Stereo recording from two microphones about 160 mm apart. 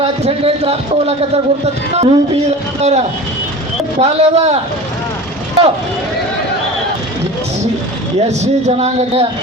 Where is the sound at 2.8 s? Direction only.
45° right (ahead or behind).